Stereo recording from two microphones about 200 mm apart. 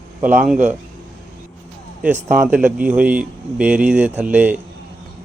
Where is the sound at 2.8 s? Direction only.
5° right (ahead or behind).